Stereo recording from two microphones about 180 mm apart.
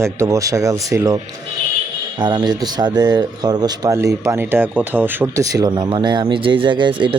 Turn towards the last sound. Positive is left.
turn(degrees=-25)  # may be behind; listen again after turning